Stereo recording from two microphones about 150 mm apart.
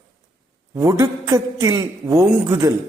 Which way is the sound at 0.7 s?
20° right (ahead or behind).